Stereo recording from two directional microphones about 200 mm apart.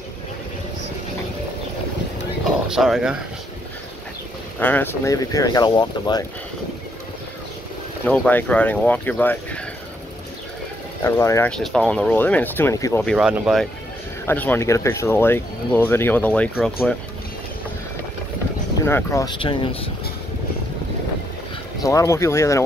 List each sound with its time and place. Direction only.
2.7 s speech: centre (ahead or behind)
4.6 s speech: 10° left (ahead or behind)
8.0 s speech: 10° left (ahead or behind)
11.1 s speech: 15° left (ahead or behind)
11.5 s speech: 5° left (ahead or behind)
13.0 s speech: centre (ahead or behind)
14.2 s speech: 10° left (ahead or behind)
18.9 s speech: 10° left (ahead or behind)
19.4 s speech: 25° left (ahead or behind)
21.8 s speech: 15° left (ahead or behind)